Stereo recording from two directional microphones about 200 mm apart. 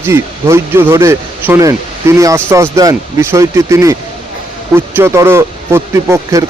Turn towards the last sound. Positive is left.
turn(degrees=-15)  # may be behind; listen again after turning